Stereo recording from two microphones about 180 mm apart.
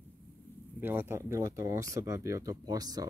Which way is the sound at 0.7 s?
10° right (ahead or behind).